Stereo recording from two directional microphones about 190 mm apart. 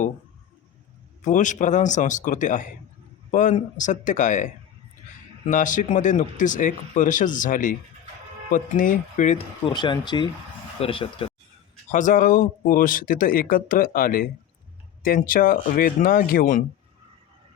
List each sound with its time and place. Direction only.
1.2 s speech: 40° left (ahead or behind)
5.5 s speech: 45° left (ahead or behind)
9.6 s speech: 25° left (ahead or behind)
11.9 s speech: 40° left (ahead or behind)